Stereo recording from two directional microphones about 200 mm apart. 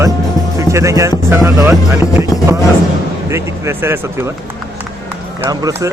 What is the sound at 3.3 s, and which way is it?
Speech, 15° right (ahead or behind).